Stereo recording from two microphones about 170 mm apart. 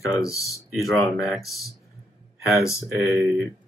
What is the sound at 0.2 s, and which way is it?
Speech, 20° left (ahead or behind).